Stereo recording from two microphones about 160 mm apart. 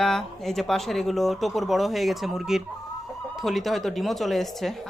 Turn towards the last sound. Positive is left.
turn(degrees=0)  # may be behind; listen again after turning